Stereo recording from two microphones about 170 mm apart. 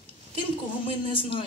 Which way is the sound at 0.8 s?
30° left (ahead or behind).